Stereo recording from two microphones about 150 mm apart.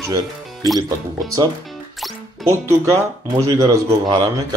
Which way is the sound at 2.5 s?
20° right (ahead or behind).